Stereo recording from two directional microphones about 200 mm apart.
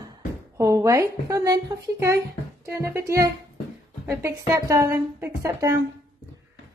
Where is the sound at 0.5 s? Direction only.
15° right (ahead or behind).